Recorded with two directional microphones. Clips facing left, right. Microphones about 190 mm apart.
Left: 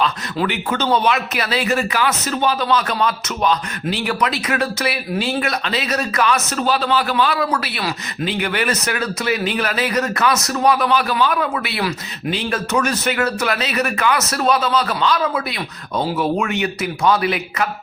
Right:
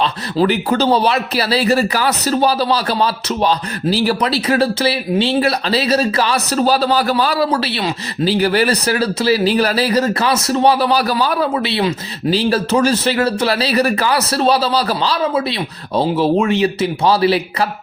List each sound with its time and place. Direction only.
0.0 s speech: 35° right (ahead or behind)